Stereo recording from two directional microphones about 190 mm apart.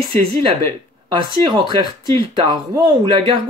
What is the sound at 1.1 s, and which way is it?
Speech, 25° right (ahead or behind).